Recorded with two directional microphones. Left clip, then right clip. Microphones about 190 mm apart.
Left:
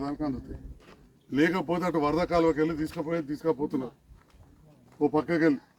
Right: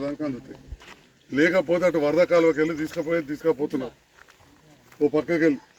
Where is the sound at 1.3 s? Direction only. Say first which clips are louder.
Right 6 dB; 20° left (ahead or behind).